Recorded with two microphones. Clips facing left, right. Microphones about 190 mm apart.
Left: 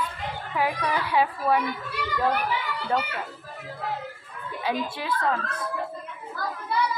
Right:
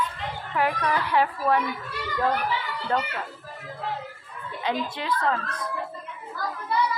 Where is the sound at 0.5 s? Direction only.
5° left (ahead or behind).